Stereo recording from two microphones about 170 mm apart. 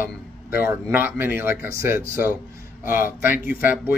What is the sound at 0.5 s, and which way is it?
Speech, 10° right (ahead or behind).